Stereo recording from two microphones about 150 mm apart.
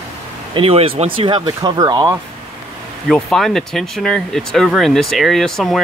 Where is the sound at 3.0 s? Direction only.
Centre (ahead or behind).